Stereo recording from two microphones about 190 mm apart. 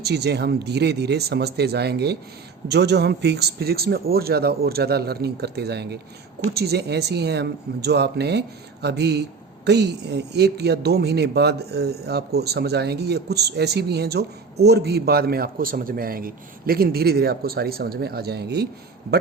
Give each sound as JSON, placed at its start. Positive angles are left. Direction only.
{"t": 0.0, "sound": "speech", "side_deg": -60}